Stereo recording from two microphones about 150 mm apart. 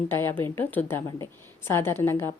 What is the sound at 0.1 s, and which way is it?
A woman's voice, 15° left (ahead or behind).